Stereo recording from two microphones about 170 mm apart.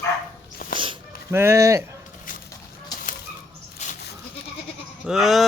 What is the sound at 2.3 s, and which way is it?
Chicken, 50° left (ahead or behind).